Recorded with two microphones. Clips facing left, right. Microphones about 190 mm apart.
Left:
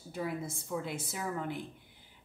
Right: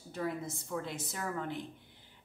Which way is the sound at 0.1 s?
10° left (ahead or behind).